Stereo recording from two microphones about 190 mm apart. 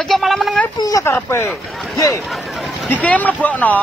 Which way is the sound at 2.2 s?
Centre (ahead or behind).